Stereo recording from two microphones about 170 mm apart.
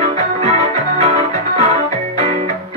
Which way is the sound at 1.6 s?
35° right (ahead or behind).